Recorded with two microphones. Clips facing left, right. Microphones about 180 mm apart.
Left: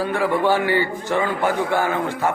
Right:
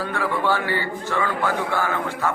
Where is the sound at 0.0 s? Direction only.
15° left (ahead or behind).